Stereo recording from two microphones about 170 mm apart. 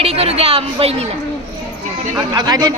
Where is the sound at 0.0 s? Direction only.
35° right (ahead or behind).